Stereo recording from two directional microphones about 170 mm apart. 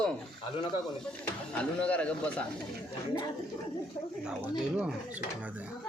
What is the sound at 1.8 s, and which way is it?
Speech, 5° left (ahead or behind).